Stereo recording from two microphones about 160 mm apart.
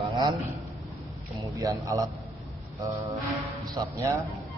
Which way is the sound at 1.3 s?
20° right (ahead or behind).